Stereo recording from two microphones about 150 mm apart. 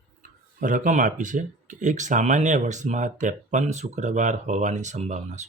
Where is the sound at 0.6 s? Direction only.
65° right (ahead or behind).